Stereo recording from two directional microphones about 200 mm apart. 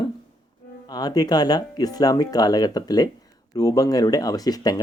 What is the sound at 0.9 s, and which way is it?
Speech, 20° left (ahead or behind).